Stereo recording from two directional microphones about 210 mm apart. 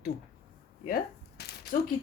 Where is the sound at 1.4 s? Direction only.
50° left (ahead or behind).